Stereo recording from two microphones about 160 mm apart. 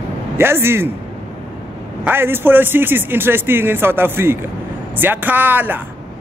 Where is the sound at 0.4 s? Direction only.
15° right (ahead or behind).